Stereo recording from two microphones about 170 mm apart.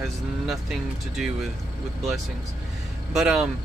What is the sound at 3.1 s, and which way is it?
Speech, 5° right (ahead or behind).